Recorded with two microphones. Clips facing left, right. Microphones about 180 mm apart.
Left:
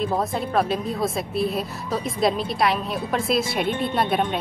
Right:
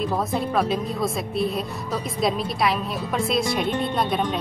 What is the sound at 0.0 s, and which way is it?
A woman's voice, centre (ahead or behind).